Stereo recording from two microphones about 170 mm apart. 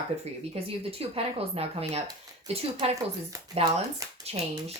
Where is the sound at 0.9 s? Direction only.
35° right (ahead or behind).